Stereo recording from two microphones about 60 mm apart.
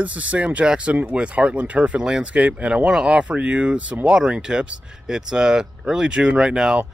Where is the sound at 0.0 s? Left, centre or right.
Right.